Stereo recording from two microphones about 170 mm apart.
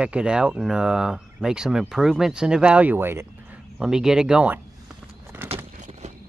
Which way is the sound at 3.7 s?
5° right (ahead or behind).